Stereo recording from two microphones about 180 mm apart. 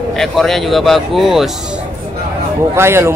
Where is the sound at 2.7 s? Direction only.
15° right (ahead or behind).